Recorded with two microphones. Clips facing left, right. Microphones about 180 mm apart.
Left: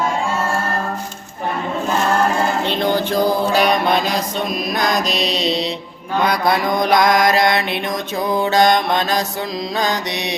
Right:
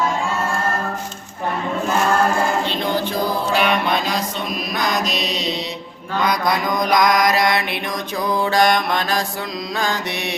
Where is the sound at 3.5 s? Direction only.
40° left (ahead or behind).